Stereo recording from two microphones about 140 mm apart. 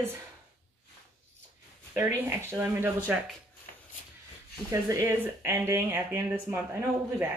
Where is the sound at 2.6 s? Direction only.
15° right (ahead or behind).